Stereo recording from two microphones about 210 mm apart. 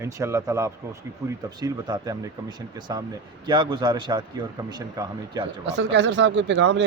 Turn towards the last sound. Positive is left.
turn(degrees=-55)  # may be behind; listen again after turning